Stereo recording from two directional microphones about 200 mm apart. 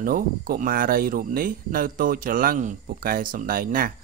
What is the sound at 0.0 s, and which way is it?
Speech, 45° right (ahead or behind).